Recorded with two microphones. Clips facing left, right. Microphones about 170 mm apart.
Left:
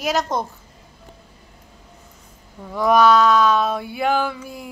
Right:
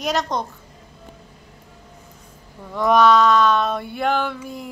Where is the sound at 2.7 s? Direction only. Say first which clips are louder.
Even; 5° left (ahead or behind).